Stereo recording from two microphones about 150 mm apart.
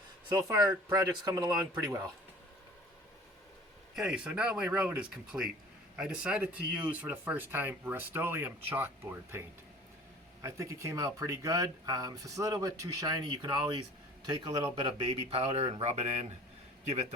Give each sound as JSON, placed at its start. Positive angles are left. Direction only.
{"t": 0.3, "sound": "speech", "side_deg": -25}
{"t": 3.9, "sound": "speech", "side_deg": -5}
{"t": 10.4, "sound": "speech", "side_deg": -20}
{"t": 14.3, "sound": "speech", "side_deg": -30}